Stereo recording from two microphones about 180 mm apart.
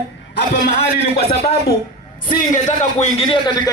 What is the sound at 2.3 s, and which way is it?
A man's voice, 45° left (ahead or behind).